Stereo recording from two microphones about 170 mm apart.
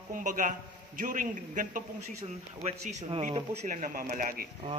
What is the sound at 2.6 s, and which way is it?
A man's voice, 40° right (ahead or behind).